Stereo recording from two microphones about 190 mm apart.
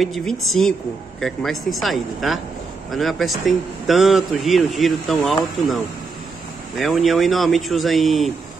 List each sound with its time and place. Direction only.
0.0 s a man's voice: centre (ahead or behind)
6.8 s a man's voice: centre (ahead or behind)